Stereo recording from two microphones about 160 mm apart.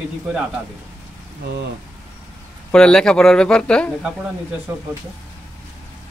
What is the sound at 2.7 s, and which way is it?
Speech, 5° left (ahead or behind).